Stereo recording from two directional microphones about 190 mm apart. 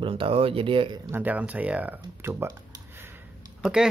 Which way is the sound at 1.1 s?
10° right (ahead or behind).